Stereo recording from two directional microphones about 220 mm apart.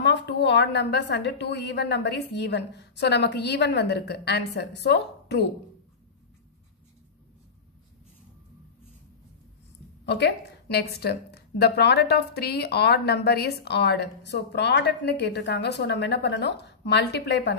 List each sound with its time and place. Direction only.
0.0 s a woman's voice: 50° left (ahead or behind)
10.0 s a woman's voice: 50° left (ahead or behind)